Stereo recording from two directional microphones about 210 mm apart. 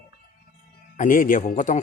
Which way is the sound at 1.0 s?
40° left (ahead or behind).